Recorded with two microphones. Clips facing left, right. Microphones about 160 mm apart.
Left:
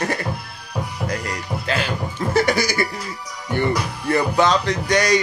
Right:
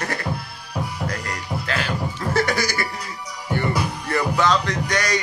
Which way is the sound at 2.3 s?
20° left (ahead or behind).